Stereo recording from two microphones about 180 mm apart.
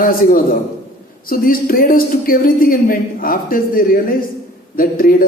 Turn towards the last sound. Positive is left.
turn(degrees=55)  # may be behind; listen again after turning